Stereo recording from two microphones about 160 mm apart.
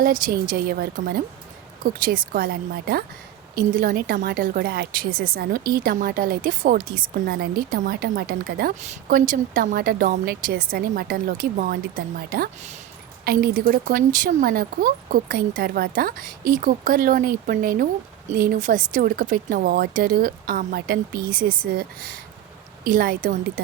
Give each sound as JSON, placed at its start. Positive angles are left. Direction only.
{"t": 0.0, "sound": "a woman's voice", "side_deg": -60}
{"t": 1.8, "sound": "speech", "side_deg": -60}
{"t": 3.5, "sound": "a woman's voice", "side_deg": -60}
{"t": 8.8, "sound": "a woman's voice", "side_deg": -55}